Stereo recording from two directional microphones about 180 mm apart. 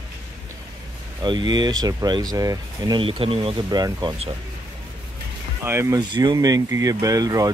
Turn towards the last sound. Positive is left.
turn(degrees=-20)  # may be behind; listen again after turning